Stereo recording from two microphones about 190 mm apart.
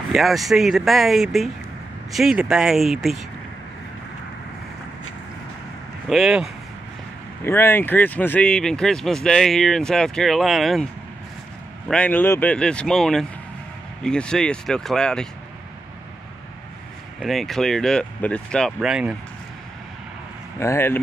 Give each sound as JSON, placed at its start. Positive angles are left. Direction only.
{"t": 0.1, "sound": "speech", "side_deg": 0}
{"t": 6.0, "sound": "speech", "side_deg": 0}
{"t": 7.4, "sound": "speech", "side_deg": 10}
{"t": 11.9, "sound": "speech", "side_deg": 5}
{"t": 17.2, "sound": "speech", "side_deg": 0}
{"t": 20.5, "sound": "speech", "side_deg": 15}